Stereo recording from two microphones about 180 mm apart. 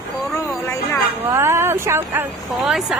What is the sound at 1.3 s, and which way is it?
Speech, 15° right (ahead or behind).